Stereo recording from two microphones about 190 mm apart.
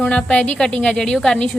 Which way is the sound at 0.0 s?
5° left (ahead or behind).